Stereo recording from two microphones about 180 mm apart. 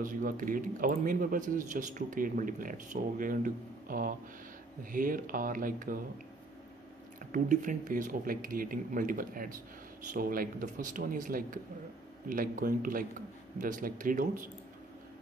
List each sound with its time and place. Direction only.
0.0 s speech: 50° right (ahead or behind)
7.3 s speech: 45° right (ahead or behind)